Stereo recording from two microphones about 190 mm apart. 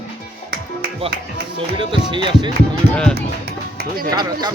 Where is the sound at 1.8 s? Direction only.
25° right (ahead or behind).